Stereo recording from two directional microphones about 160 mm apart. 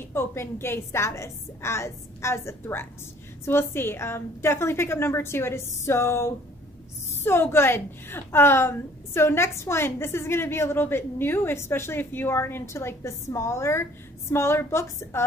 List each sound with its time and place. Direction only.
0.0 s a woman's voice: 15° left (ahead or behind)